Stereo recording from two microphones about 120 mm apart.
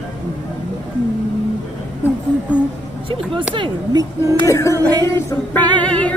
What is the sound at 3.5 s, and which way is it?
Speech, 45° right (ahead or behind).